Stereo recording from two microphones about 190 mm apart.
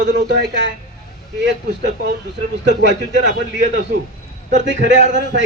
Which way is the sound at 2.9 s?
70° right (ahead or behind).